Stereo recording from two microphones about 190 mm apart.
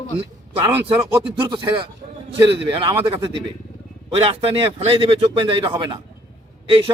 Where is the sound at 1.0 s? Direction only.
20° right (ahead or behind).